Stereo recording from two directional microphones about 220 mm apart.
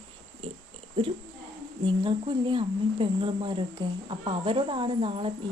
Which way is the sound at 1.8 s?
20° right (ahead or behind).